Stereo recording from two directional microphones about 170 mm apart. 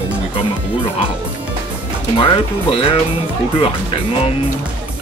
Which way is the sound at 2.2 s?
30° left (ahead or behind).